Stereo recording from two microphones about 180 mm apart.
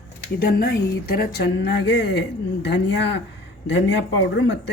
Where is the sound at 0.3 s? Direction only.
60° left (ahead or behind).